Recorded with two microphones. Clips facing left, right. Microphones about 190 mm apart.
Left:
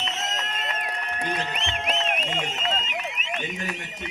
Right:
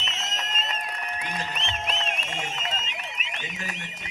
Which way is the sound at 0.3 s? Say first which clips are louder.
Left 2 dB; 60° left (ahead or behind).